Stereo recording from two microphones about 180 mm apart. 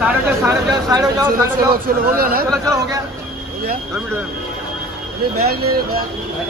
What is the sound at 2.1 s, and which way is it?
Speech, 55° right (ahead or behind).